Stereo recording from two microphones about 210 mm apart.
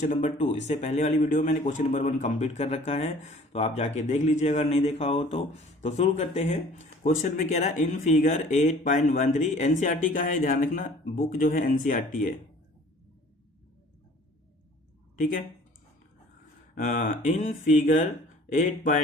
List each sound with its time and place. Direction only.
0.0 s speech: 35° left (ahead or behind)
15.2 s speech: 40° left (ahead or behind)
16.7 s speech: 40° left (ahead or behind)